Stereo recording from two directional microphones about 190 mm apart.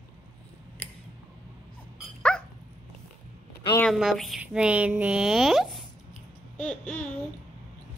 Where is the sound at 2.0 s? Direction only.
5° left (ahead or behind).